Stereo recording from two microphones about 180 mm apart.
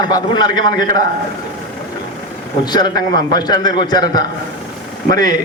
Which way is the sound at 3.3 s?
20° left (ahead or behind).